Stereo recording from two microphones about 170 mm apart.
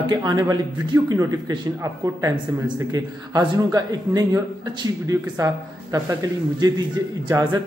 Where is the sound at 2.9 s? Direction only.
20° right (ahead or behind).